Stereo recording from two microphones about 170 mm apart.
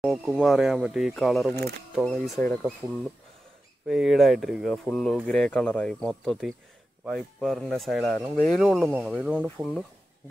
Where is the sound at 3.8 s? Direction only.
Centre (ahead or behind).